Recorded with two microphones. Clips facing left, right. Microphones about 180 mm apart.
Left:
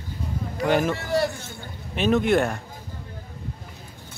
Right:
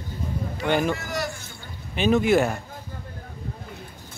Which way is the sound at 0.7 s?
Centre (ahead or behind).